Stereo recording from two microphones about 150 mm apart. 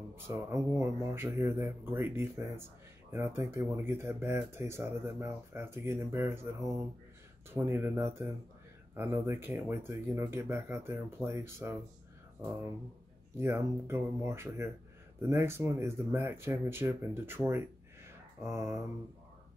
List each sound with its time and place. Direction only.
0.1 s speech: 20° right (ahead or behind)
7.5 s speech: 15° right (ahead or behind)
13.4 s speech: 15° right (ahead or behind)
18.0 s mantra: 20° right (ahead or behind)